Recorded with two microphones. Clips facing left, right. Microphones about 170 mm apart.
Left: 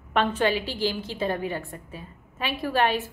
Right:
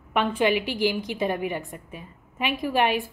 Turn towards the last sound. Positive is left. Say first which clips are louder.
# right 1 dB
turn(degrees=-15)  # may be behind; listen again after turning